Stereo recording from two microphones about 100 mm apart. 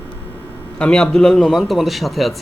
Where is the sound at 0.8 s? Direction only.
10° left (ahead or behind).